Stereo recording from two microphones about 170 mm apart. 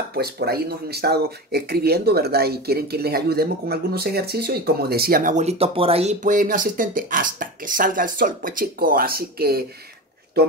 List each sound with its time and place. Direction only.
0.1 s speech: 70° right (ahead or behind)